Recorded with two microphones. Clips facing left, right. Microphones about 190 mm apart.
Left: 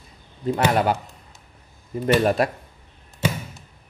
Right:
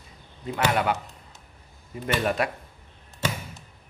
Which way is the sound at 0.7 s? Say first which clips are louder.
Left 2 dB; 35° left (ahead or behind).